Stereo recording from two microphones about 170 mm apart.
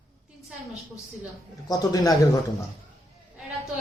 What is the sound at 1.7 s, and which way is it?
Speech, 20° left (ahead or behind).